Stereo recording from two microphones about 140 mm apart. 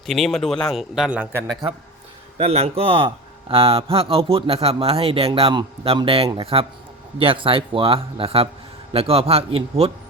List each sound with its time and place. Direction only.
0.0 s a man's voice: centre (ahead or behind); by 1.5 s 20° right (ahead or behind)
2.4 s speech: 45° right (ahead or behind)